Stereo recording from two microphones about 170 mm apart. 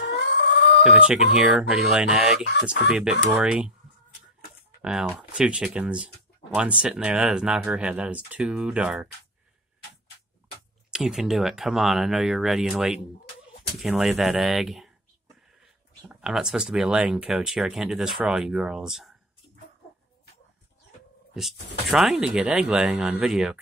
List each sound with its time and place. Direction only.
0.0 s a sound: 80° left
0.9 s speech: 5° right (ahead or behind)
4.8 s speech: 5° right (ahead or behind)
10.9 s speech: 5° right (ahead or behind)
16.1 s speech: 5° right (ahead or behind)
21.8 s speech: centre (ahead or behind)